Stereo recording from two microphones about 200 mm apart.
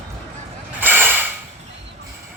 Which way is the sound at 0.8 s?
10° right (ahead or behind).